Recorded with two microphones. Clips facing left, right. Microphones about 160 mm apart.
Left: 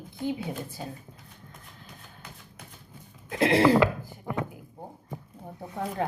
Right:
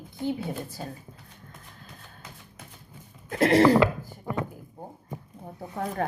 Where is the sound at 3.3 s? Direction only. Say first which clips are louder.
Right 2 dB; 15° left (ahead or behind).